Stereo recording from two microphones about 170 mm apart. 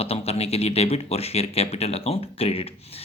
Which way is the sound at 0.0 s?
35° left (ahead or behind).